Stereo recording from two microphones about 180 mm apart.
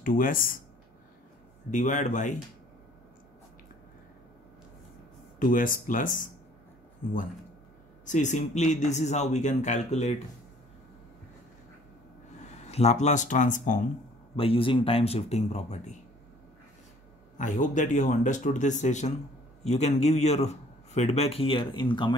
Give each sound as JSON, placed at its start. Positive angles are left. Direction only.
{"t": 0.0, "sound": "speech", "side_deg": 50}
{"t": 1.7, "sound": "speech", "side_deg": 45}
{"t": 5.4, "sound": "speech", "side_deg": 50}
{"t": 8.0, "sound": "a man's voice", "side_deg": 40}
{"t": 12.6, "sound": "speech", "side_deg": 40}
{"t": 14.3, "sound": "a man's voice", "side_deg": 30}
{"t": 17.4, "sound": "a man's voice", "side_deg": 45}